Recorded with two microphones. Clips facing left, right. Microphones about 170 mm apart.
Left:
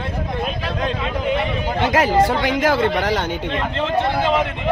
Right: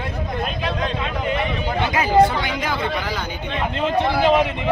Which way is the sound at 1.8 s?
85° left.